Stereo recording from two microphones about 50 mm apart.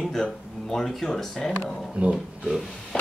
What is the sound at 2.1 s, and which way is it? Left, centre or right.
Speech, centre.